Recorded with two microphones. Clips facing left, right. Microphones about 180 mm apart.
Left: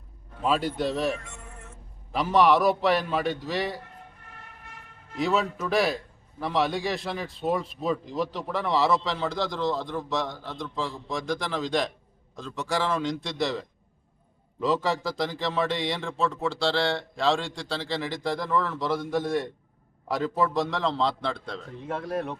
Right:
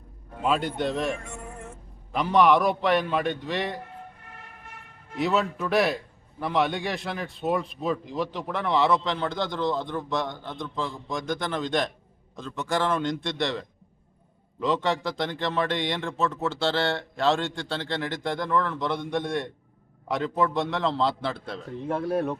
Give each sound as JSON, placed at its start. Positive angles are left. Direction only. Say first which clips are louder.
{"t": 0.4, "sound": "a man's voice", "louder": "even", "side_deg": 5}
{"t": 1.3, "sound": "music", "louder": "right 7 dB", "side_deg": -50}
{"t": 2.1, "sound": "a man's voice", "louder": "right 1 dB", "side_deg": 0}
{"t": 5.1, "sound": "a man's voice", "louder": "right 1 dB", "side_deg": 0}